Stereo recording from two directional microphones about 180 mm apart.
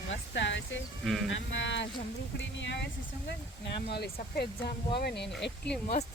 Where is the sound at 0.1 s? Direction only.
90° left.